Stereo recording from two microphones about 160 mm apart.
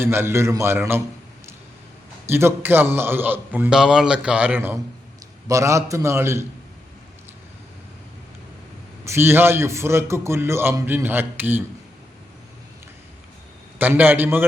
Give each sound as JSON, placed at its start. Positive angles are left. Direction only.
{"t": 0.0, "sound": "a man's voice", "side_deg": -15}
{"t": 2.2, "sound": "a man's voice", "side_deg": -15}
{"t": 9.0, "sound": "a man's voice", "side_deg": -15}
{"t": 13.7, "sound": "a man's voice", "side_deg": -10}